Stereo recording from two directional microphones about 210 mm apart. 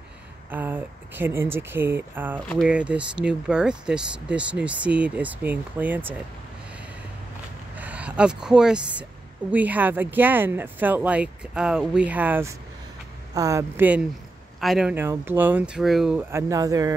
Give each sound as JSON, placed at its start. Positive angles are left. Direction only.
{"t": 0.5, "sound": "speech", "side_deg": -10}
{"t": 7.7, "sound": "speech", "side_deg": -5}
{"t": 16.3, "sound": "speech", "side_deg": -15}